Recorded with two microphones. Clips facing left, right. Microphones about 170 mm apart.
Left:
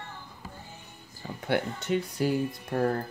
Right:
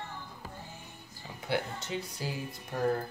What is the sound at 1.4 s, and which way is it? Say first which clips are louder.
Speech: left 4 dB; 55° left (ahead or behind).